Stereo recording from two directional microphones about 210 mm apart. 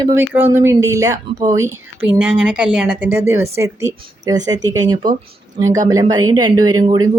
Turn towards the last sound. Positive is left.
turn(degrees=-20)  # may be behind; listen again after turning